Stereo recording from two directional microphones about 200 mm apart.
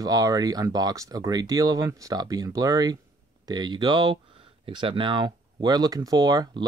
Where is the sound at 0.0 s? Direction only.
20° right (ahead or behind).